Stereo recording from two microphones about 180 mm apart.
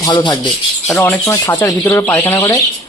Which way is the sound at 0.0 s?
25° left (ahead or behind).